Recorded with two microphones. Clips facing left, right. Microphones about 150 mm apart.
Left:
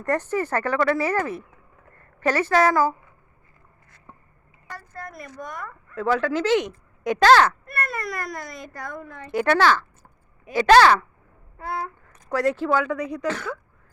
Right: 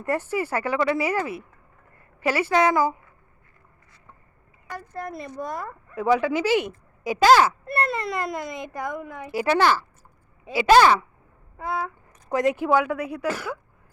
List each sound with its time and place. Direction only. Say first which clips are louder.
0.0 s a woman's voice: left 1 dB; 10° right (ahead or behind)
4.7 s a sound: right 5 dB; 20° right (ahead or behind)
5.4 s speech: right 4 dB; 30° right (ahead or behind)
5.9 s speech: right 1 dB; 15° right (ahead or behind)
7.6 s a child's voice: right 4 dB; 25° right (ahead or behind); by 13.6 s 10° right (ahead or behind)